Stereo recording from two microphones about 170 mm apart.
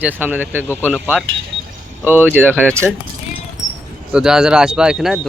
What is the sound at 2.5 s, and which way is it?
Speech, 5° left (ahead or behind).